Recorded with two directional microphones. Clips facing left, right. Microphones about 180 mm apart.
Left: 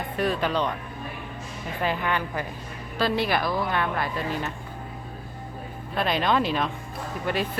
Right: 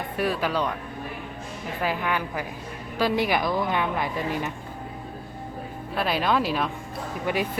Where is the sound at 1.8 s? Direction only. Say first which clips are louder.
Even; 5° right (ahead or behind).